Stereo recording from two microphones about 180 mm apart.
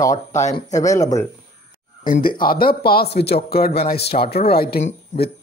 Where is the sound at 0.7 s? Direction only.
20° left (ahead or behind).